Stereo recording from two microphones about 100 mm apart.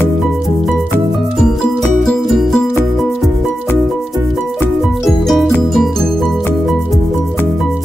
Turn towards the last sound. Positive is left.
turn(degrees=0)  # may be behind; listen again after turning